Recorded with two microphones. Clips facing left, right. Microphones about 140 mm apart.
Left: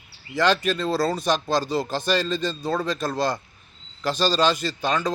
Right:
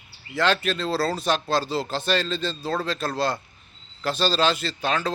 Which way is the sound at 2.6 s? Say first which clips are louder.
Left 2 dB; 5° right (ahead or behind).